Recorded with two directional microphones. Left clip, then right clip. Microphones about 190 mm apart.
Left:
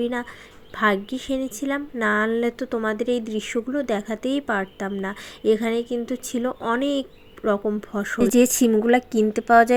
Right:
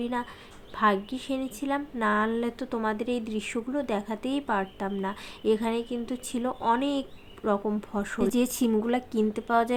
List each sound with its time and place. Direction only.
0.0 s speech: 20° left (ahead or behind)